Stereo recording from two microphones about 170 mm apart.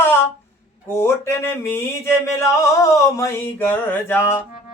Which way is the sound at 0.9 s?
15° left (ahead or behind).